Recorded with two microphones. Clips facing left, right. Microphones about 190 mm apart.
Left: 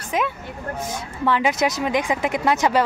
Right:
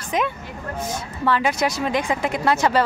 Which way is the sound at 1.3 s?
15° left (ahead or behind).